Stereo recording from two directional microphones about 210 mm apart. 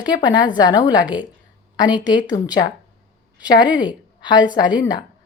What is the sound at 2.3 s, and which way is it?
Speech, 30° left (ahead or behind).